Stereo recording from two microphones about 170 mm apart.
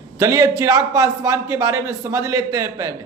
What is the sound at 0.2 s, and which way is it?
A man's voice, 20° right (ahead or behind).